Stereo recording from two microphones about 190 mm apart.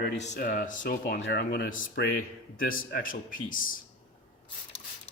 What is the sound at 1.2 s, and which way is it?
Speech, 55° left (ahead or behind).